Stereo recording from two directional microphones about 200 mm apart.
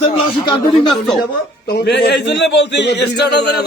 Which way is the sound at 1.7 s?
55° left (ahead or behind).